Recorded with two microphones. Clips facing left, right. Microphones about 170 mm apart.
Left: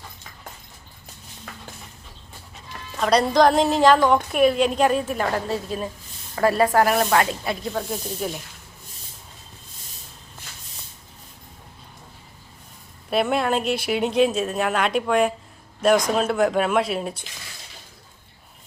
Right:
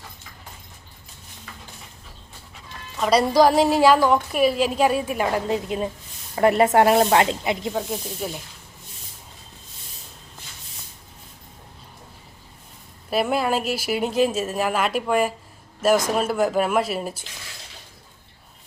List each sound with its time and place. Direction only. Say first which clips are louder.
3.0 s a woman's voice: even; 5° right (ahead or behind); by 7.8 s 20° right (ahead or behind)
7.8 s speech: even; 5° right (ahead or behind)
13.1 s speech: even; centre (ahead or behind)